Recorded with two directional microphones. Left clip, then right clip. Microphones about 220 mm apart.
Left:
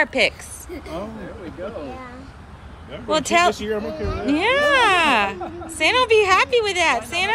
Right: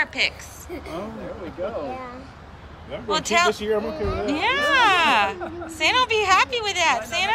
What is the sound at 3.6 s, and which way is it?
Speech, 35° right (ahead or behind).